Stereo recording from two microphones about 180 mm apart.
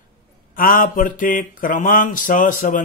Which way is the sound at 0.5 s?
50° left (ahead or behind).